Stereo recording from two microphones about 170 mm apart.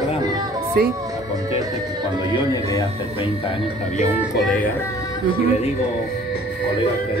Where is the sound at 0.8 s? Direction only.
60° right (ahead or behind).